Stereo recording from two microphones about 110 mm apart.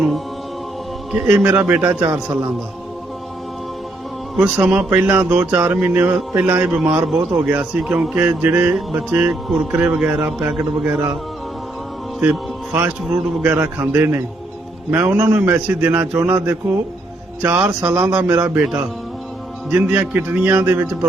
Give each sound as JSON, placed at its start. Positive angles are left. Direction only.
{"t": 1.2, "sound": "speech", "side_deg": -10}
{"t": 2.0, "sound": "a man's voice", "side_deg": -30}
{"t": 4.4, "sound": "speech", "side_deg": -15}
{"t": 12.2, "sound": "music", "side_deg": -15}
{"t": 13.4, "sound": "a man's voice", "side_deg": -20}
{"t": 19.7, "sound": "speech", "side_deg": -15}